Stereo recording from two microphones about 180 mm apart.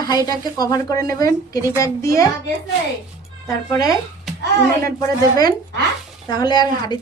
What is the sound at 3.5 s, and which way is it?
A woman's voice, 20° left (ahead or behind).